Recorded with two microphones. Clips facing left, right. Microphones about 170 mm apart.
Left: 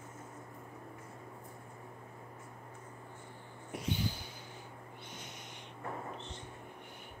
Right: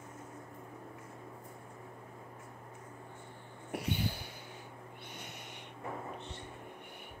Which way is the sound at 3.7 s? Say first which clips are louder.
Right 1 dB; 60° right (ahead or behind).